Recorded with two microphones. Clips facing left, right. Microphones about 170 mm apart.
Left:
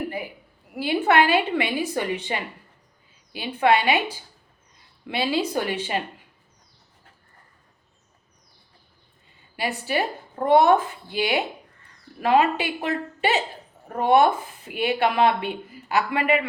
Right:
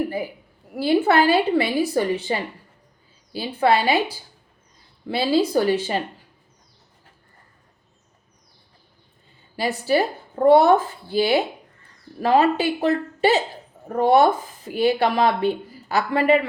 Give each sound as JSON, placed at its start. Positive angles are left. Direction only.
{"t": 0.8, "sound": "speech", "side_deg": -35}
{"t": 9.6, "sound": "speech", "side_deg": -35}